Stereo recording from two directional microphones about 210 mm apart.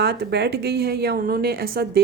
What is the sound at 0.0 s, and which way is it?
A woman's voice, 50° right (ahead or behind).